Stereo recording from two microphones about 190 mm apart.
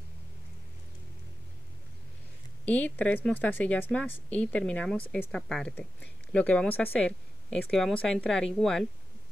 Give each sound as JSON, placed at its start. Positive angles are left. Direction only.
{"t": 2.6, "sound": "speech", "side_deg": 10}